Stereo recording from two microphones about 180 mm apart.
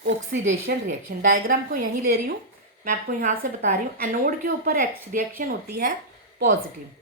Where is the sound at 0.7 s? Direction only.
55° right (ahead or behind).